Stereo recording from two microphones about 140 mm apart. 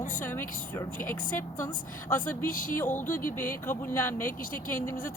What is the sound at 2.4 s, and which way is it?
Speech, 80° left.